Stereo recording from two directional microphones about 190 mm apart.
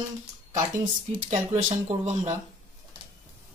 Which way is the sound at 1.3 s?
40° right (ahead or behind).